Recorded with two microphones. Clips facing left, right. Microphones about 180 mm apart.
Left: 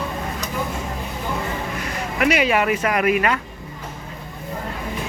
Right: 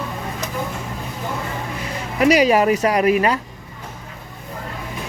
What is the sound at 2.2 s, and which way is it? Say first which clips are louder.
Speech: right 5 dB; 35° right (ahead or behind).